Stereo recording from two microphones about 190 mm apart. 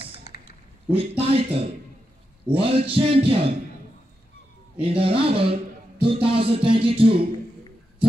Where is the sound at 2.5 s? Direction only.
30° right (ahead or behind).